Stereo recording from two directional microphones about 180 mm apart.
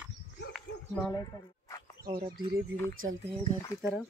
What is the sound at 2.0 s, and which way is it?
Speech, 25° right (ahead or behind).